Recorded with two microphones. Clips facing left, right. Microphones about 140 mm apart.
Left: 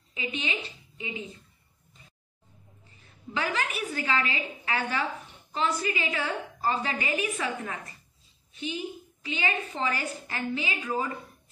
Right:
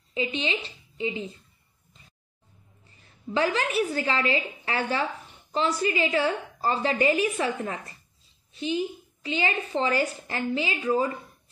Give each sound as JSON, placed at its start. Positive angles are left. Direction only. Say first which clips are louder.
{"t": 0.1, "sound": "a woman's voice", "louder": "right 5 dB", "side_deg": -30}
{"t": 3.3, "sound": "a woman's voice", "louder": "right 6 dB", "side_deg": -30}
{"t": 9.2, "sound": "a woman's voice", "louder": "right 3 dB", "side_deg": -35}